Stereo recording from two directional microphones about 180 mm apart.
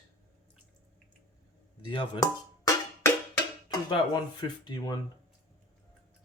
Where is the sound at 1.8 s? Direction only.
25° left (ahead or behind).